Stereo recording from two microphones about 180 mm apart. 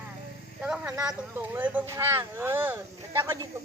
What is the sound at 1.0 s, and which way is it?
Speech, 10° right (ahead or behind).